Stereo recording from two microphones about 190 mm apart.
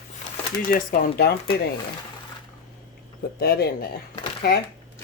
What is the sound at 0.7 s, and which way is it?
Speech, 45° left (ahead or behind).